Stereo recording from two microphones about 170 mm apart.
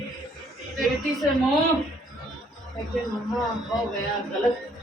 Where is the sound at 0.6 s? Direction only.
Centre (ahead or behind).